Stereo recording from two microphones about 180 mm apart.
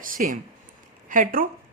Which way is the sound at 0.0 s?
50° right (ahead or behind).